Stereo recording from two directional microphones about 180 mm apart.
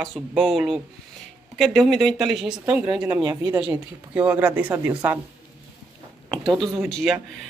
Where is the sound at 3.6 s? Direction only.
5° right (ahead or behind).